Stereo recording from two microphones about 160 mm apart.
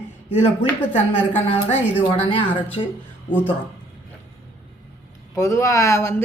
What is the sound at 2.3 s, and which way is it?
Speech, 35° left (ahead or behind).